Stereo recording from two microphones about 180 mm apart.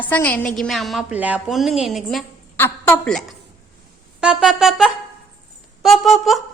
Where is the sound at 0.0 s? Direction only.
10° left (ahead or behind).